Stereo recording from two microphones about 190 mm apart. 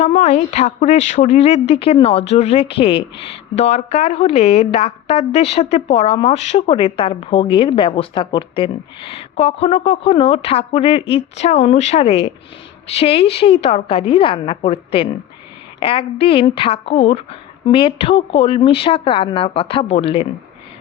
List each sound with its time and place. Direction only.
0.0 s a woman's voice: 35° left (ahead or behind)